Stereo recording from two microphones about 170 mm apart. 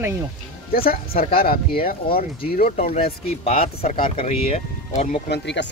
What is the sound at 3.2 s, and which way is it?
Speech, 35° left (ahead or behind).